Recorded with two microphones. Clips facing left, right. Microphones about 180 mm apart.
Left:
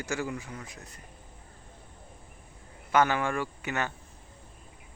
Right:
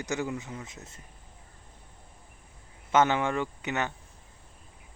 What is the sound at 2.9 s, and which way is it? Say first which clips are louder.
Speech: right 1 dB; 20° right (ahead or behind).